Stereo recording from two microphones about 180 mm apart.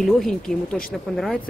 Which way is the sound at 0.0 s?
Centre (ahead or behind).